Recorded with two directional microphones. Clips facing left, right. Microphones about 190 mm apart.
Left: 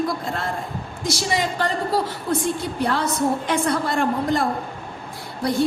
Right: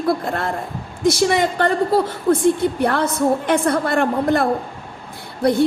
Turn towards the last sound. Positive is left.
turn(degrees=-60)  # may be behind; listen again after turning